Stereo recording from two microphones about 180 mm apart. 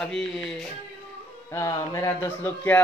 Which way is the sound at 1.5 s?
15° left (ahead or behind).